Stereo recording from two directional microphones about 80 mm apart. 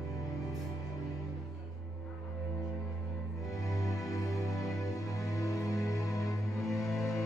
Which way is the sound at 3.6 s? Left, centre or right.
Left.